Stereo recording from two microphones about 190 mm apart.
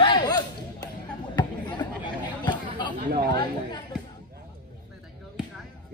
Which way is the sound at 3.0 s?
45° right (ahead or behind).